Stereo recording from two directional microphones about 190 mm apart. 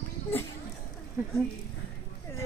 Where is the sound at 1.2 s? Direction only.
10° right (ahead or behind).